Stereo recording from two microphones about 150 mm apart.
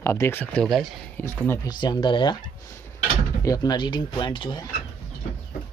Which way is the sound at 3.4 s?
25° left (ahead or behind).